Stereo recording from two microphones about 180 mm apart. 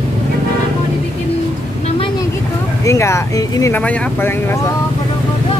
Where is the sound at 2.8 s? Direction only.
15° left (ahead or behind).